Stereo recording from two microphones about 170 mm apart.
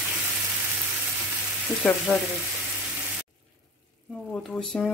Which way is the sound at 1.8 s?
5° left (ahead or behind).